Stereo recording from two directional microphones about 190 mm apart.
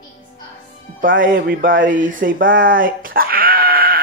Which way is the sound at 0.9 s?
45° right (ahead or behind).